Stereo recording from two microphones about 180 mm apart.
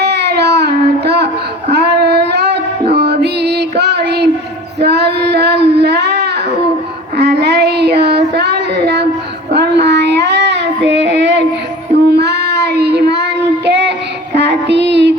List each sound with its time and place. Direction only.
0.0 s a sound: 70° right (ahead or behind)
1.7 s music: 70° right (ahead or behind)
4.8 s child singing: 65° right (ahead or behind)
5.7 s a sound: 65° right (ahead or behind)
7.2 s child singing: 65° right (ahead or behind)
12.0 s child singing: 65° right (ahead or behind)